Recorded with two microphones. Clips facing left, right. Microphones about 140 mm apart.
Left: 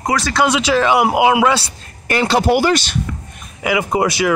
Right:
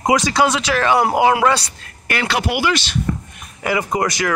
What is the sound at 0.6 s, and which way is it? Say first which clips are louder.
Speech: left 2 dB; 20° left (ahead or behind).